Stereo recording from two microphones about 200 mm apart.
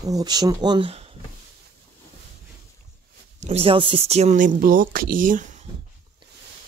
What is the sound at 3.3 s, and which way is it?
Speech, 30° right (ahead or behind).